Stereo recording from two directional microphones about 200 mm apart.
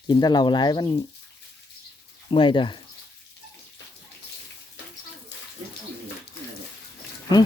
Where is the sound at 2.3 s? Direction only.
25° left (ahead or behind).